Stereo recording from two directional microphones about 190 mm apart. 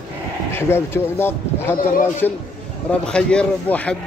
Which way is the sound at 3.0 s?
5° left (ahead or behind).